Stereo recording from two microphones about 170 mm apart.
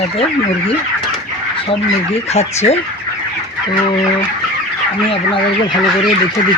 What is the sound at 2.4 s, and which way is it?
Fowl, 40° left (ahead or behind).